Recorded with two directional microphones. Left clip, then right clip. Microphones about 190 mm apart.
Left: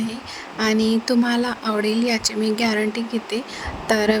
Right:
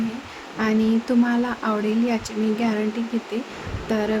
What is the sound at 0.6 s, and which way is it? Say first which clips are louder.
A woman's voice: left 2 dB; 35° left (ahead or behind).